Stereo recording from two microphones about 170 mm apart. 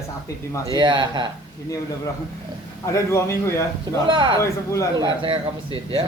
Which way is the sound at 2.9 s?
15° left (ahead or behind).